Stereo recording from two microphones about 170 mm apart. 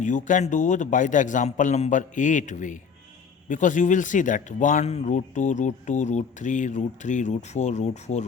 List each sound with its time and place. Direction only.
0.0 s speech: 45° left (ahead or behind)